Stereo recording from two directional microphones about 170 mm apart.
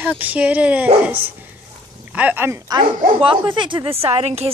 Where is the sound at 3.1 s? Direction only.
30° right (ahead or behind).